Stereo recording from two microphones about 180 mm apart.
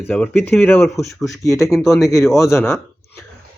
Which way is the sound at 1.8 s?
Centre (ahead or behind).